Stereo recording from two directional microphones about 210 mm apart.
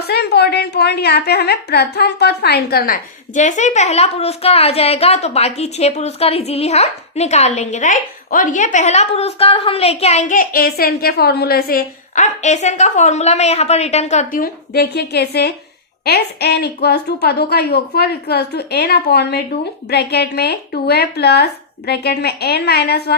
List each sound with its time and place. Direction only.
0.0 s a woman's voice: 50° left (ahead or behind)